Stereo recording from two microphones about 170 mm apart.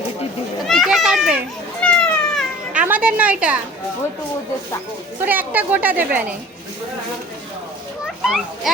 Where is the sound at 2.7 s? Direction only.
10° right (ahead or behind).